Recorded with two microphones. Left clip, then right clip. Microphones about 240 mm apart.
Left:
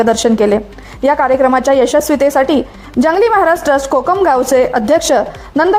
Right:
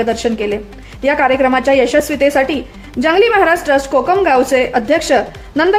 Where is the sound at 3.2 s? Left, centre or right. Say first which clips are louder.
Even; centre.